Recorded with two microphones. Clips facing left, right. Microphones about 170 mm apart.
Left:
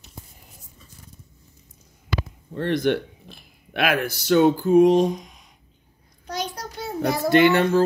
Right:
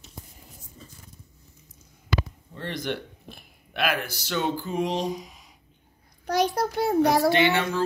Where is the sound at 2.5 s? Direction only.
55° left (ahead or behind).